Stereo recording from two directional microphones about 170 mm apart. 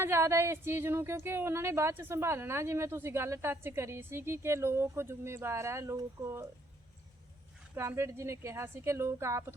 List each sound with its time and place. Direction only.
0.0 s speech: 15° right (ahead or behind)
7.8 s speech: 15° right (ahead or behind)